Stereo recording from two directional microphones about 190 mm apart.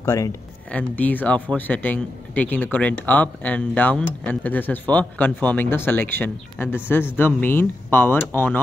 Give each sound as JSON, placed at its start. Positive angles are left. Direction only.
{"t": 0.0, "sound": "a man's voice", "side_deg": 15}